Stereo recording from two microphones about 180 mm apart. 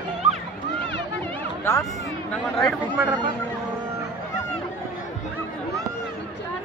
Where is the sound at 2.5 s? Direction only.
5° right (ahead or behind).